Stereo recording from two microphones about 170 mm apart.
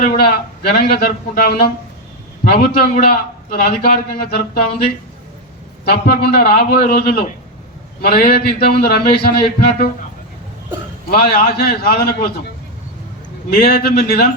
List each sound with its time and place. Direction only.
0.2 s speech: 65° left (ahead or behind)
5.8 s speech: 65° left (ahead or behind)
11.1 s speech: 65° left (ahead or behind)
13.6 s speech: 65° left (ahead or behind)